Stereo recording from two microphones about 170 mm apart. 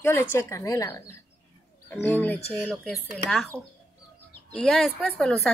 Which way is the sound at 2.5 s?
5° left (ahead or behind).